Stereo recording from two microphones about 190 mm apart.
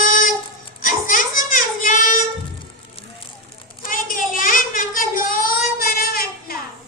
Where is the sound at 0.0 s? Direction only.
45° left (ahead or behind).